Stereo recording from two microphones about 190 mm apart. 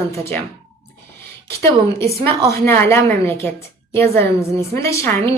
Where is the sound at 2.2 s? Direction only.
15° left (ahead or behind).